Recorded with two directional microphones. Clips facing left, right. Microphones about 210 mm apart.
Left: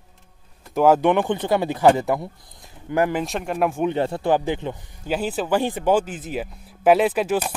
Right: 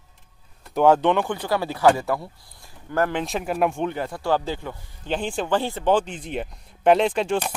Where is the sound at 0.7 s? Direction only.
5° left (ahead or behind).